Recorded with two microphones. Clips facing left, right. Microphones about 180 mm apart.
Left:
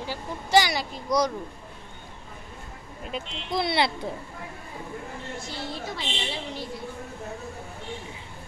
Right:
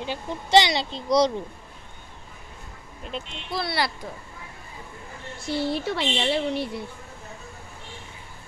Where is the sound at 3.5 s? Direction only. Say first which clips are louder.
Left 3 dB; 20° left (ahead or behind).